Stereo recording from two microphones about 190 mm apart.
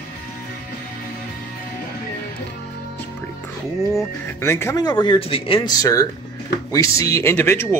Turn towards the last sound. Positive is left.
turn(degrees=10)  # may be behind; listen again after turning